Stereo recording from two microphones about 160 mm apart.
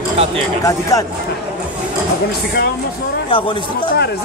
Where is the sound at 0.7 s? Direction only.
20° left (ahead or behind).